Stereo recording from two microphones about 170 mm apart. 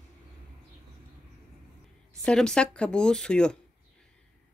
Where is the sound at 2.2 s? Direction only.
5° left (ahead or behind).